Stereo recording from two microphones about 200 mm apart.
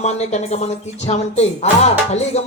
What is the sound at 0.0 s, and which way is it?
Speech, 35° left (ahead or behind).